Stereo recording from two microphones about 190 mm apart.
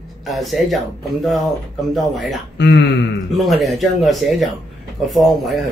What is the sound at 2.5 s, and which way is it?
Speech, 65° left (ahead or behind).